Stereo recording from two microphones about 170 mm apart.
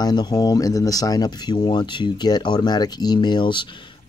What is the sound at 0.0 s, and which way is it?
Speech, 25° left (ahead or behind).